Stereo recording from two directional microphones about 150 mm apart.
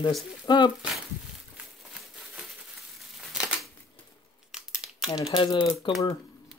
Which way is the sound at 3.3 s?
5° right (ahead or behind).